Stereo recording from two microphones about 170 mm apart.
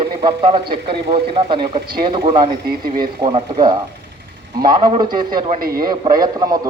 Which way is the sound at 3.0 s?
30° right (ahead or behind).